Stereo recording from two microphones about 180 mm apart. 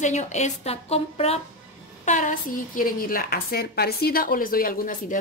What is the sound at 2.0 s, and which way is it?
A woman's voice, 45° left (ahead or behind).